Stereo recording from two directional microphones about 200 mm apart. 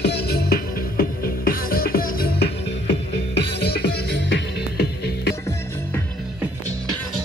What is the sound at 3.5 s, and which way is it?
Music, 55° left (ahead or behind).